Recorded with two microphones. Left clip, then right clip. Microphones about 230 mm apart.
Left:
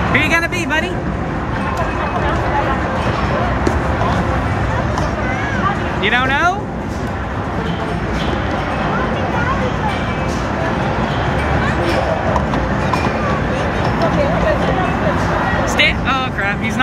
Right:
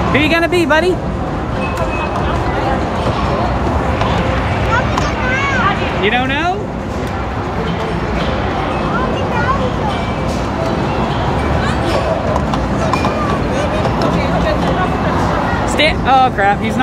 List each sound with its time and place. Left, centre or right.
0.1 s speech: centre
0.7 s speech: right
6.0 s speech: centre
15.8 s speech: centre